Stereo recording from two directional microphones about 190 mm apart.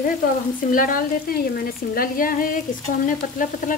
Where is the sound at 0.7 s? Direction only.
45° left (ahead or behind).